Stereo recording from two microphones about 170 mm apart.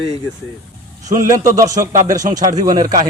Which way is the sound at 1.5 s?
20° right (ahead or behind).